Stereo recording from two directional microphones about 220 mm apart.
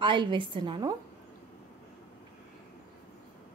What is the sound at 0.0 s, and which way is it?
Speech, 20° right (ahead or behind).